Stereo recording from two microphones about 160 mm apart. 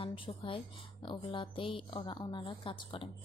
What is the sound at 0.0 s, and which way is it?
A woman's voice, 35° left (ahead or behind).